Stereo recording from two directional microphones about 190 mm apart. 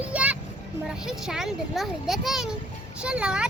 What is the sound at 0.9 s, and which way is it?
A child's voice, 5° right (ahead or behind).